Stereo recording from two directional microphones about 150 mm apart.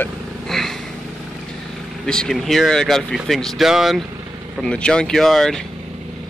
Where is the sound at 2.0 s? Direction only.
5° left (ahead or behind).